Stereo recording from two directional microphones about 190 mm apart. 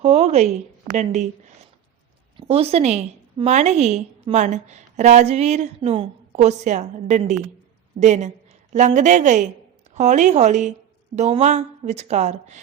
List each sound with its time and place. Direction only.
0.0 s a woman's voice: 35° right (ahead or behind)